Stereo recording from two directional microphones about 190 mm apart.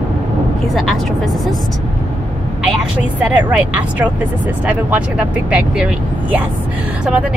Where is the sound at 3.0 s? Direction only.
10° right (ahead or behind).